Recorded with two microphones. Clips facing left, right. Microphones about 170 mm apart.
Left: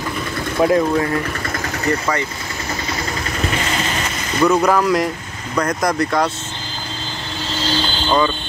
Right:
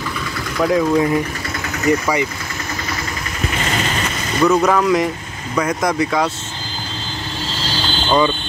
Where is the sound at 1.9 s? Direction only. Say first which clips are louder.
Right 4 dB; 10° right (ahead or behind).